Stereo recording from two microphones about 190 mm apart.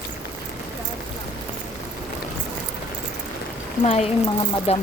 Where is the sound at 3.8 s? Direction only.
35° left (ahead or behind).